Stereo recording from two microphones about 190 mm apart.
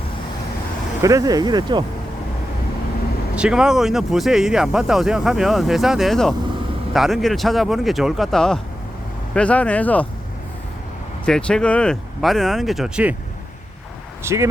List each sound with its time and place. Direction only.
1.0 s speech: 20° right (ahead or behind)
3.3 s speech: 5° right (ahead or behind)
11.3 s speech: 5° left (ahead or behind)
14.3 s speech: 15° right (ahead or behind)